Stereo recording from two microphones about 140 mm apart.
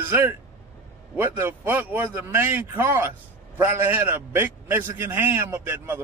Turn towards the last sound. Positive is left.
turn(degrees=-15)  # may be behind; listen again after turning